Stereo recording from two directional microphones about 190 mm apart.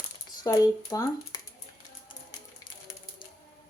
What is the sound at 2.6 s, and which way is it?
Music, 20° left (ahead or behind).